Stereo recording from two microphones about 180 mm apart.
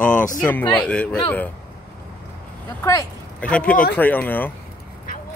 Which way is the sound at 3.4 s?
5° left (ahead or behind).